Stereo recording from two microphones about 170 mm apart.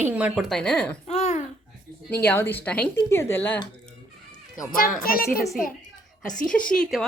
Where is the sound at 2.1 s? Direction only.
10° left (ahead or behind).